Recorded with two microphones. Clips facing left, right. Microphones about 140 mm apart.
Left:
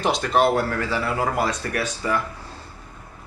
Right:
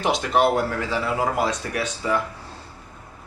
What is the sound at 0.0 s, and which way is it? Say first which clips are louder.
Speech: even; 15° right (ahead or behind).